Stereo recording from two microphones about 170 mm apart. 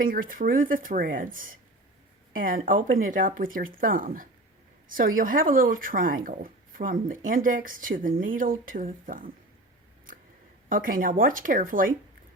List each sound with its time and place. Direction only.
0.0 s speech: 55° right (ahead or behind)
10.7 s speech: 55° right (ahead or behind)